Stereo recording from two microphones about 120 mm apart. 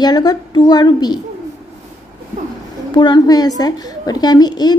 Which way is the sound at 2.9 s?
40° left (ahead or behind).